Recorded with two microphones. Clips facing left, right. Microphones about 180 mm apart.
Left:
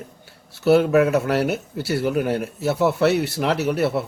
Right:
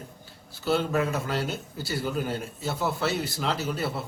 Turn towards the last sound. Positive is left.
turn(degrees=70)  # may be behind; listen again after turning